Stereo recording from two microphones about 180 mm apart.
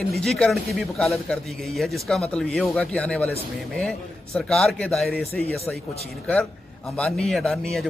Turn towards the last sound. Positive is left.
turn(degrees=0)  # may be behind; listen again after turning